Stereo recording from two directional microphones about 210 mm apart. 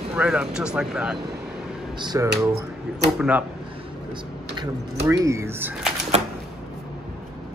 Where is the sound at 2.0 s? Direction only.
20° right (ahead or behind).